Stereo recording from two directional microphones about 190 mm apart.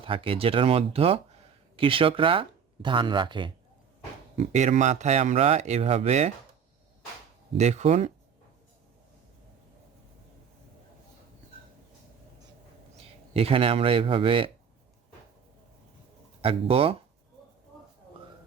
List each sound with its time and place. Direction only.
0.0 s speech: 30° right (ahead or behind)
4.4 s speech: 40° right (ahead or behind)
7.5 s speech: 35° right (ahead or behind)
13.0 s speech: 30° right (ahead or behind)
16.4 s speech: 30° right (ahead or behind)